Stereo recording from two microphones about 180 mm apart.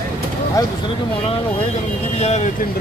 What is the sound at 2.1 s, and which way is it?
Speech, 35° left (ahead or behind).